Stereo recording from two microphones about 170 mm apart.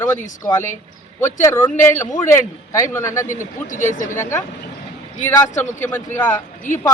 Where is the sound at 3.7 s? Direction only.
50° left (ahead or behind).